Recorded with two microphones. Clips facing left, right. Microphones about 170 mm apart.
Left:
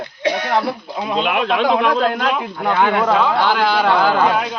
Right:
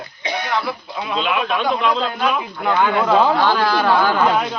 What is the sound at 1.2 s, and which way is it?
A man's voice, 65° left (ahead or behind).